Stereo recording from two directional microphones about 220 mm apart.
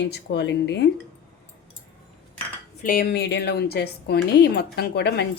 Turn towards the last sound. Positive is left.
turn(degrees=50)  # may be behind; listen again after turning